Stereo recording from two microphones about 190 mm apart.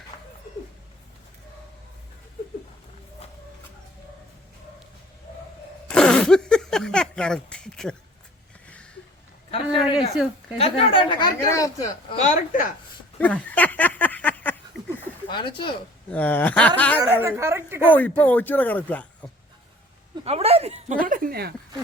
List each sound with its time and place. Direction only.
5.9 s a sound: 5° left (ahead or behind)
9.5 s a sound: 30° left (ahead or behind)
10.6 s a woman's voice: 30° left (ahead or behind)
12.2 s a woman's voice: 40° left (ahead or behind)
13.1 s a sound: 5° left (ahead or behind)
15.3 s a woman's voice: 25° left (ahead or behind)
16.0 s speech: 10° left (ahead or behind)
17.0 s a woman's voice: 10° right (ahead or behind)
17.9 s speech: 10° left (ahead or behind)
20.2 s speech: 30° right (ahead or behind); by 21.5 s 55° right (ahead or behind)